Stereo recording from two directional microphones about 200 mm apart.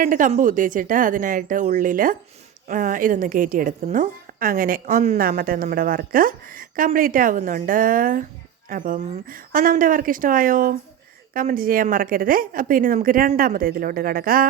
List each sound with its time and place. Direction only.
0.0 s a woman's voice: 40° right (ahead or behind)